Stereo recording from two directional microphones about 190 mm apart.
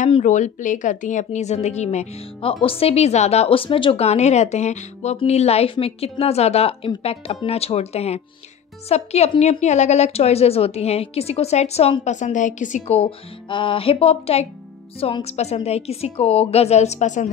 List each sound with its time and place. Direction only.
0.0 s a woman's voice: 40° left (ahead or behind)